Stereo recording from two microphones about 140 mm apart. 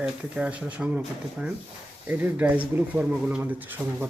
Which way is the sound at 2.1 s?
10° right (ahead or behind).